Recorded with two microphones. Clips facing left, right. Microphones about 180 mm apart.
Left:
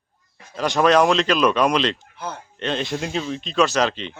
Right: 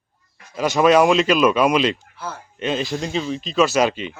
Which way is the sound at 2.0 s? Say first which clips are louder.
Even; 15° left (ahead or behind).